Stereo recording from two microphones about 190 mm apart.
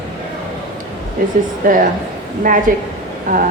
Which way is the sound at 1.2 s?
45° right (ahead or behind).